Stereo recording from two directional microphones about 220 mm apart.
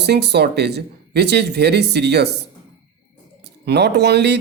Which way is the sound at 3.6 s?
50° right (ahead or behind).